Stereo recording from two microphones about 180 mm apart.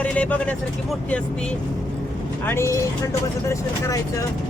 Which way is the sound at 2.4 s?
15° left (ahead or behind).